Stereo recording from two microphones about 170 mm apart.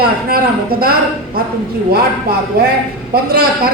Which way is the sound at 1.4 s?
65° right (ahead or behind).